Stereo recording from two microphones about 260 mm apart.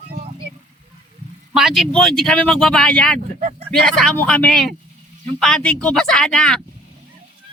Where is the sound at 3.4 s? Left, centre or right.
Right.